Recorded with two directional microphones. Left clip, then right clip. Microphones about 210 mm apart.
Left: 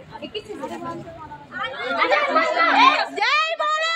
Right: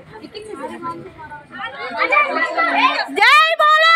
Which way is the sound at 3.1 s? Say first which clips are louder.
Right 9 dB; 45° right (ahead or behind).